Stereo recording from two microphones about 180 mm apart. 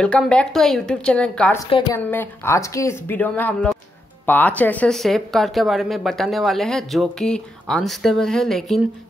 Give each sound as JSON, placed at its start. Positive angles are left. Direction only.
{"t": 0.0, "sound": "speech", "side_deg": 5}
{"t": 1.7, "sound": "a woman's voice", "side_deg": 25}
{"t": 2.0, "sound": "speech", "side_deg": 10}